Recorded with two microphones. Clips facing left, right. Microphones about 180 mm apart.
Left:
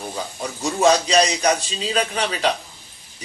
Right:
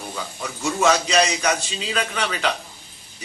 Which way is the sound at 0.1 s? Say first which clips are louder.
Left 2 dB; 35° left (ahead or behind).